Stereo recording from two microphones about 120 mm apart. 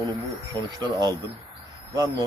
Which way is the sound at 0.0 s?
30° right (ahead or behind).